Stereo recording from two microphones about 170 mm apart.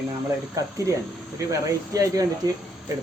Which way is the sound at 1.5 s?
20° right (ahead or behind).